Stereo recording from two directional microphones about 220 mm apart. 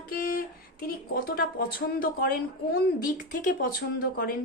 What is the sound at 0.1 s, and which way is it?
Speech, 40° left (ahead or behind).